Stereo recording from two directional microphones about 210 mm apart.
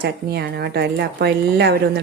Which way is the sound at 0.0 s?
50° right (ahead or behind).